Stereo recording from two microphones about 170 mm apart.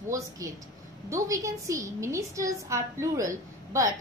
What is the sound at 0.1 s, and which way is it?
A woman's voice, 20° right (ahead or behind).